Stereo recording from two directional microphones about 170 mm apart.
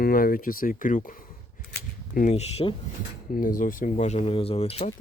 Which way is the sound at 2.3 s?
40° left (ahead or behind).